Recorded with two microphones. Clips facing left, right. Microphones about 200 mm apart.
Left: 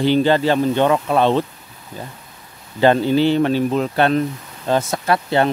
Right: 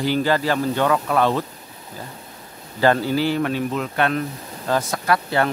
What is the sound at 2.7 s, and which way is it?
Speech, 20° left (ahead or behind).